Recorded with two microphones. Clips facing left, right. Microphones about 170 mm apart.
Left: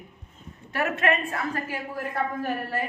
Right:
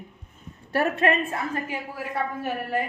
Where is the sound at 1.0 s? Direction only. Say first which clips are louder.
Right 2 dB; 25° right (ahead or behind).